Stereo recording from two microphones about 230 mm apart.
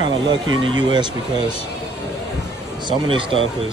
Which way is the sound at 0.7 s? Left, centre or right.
Right.